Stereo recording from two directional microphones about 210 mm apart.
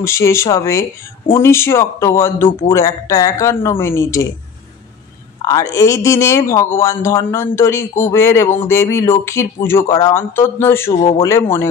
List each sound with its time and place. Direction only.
0.0 s speech: 15° left (ahead or behind)
5.4 s speech: 15° left (ahead or behind)
11.0 s speech: 25° left (ahead or behind)
11.2 s speech: 10° left (ahead or behind)